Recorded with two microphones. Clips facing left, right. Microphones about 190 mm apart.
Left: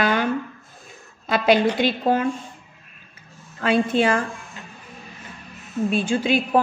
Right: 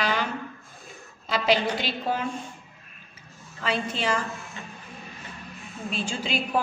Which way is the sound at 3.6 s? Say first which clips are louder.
Left 9 dB; 55° left (ahead or behind).